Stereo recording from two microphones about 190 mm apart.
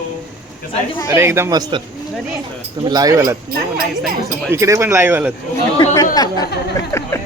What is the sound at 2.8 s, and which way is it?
Speech, 20° right (ahead or behind).